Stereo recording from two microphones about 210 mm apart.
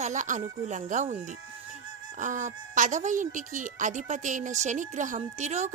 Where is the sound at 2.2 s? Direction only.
35° right (ahead or behind).